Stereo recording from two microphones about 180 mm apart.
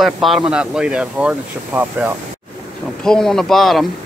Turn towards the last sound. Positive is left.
turn(degrees=0)  # may be behind; listen again after turning